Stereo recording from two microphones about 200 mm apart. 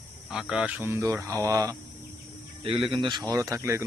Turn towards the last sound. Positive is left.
turn(degrees=-15)  # may be behind; listen again after turning